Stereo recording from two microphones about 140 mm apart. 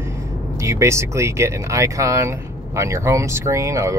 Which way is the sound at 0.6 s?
20° right (ahead or behind).